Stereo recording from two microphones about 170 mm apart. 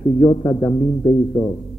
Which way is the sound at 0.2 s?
25° left (ahead or behind).